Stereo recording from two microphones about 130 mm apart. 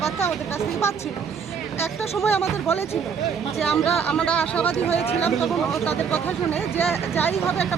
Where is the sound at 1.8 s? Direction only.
20° left (ahead or behind).